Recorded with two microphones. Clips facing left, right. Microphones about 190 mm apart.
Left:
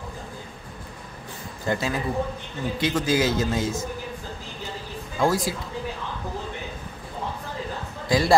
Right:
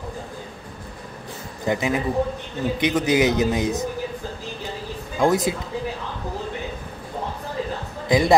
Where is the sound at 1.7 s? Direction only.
20° right (ahead or behind).